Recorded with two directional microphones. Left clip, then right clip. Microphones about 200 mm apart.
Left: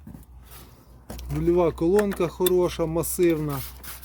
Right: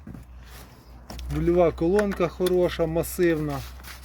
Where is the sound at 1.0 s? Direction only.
20° left (ahead or behind).